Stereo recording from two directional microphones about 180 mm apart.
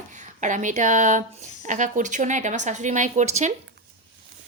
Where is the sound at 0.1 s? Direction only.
45° right (ahead or behind).